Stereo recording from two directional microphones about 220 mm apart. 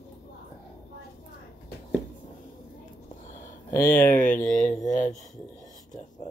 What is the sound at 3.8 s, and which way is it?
Speech, 40° left (ahead or behind).